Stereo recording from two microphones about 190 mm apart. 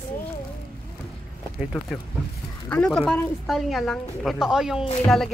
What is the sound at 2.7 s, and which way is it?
A woman's voice, 5° left (ahead or behind).